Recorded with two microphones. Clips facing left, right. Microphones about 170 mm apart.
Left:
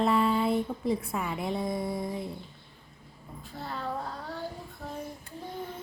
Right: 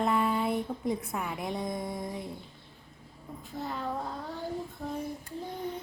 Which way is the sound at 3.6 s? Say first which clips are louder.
Right 1 dB; 15° right (ahead or behind).